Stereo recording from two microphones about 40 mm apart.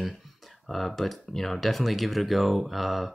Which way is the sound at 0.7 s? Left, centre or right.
Centre.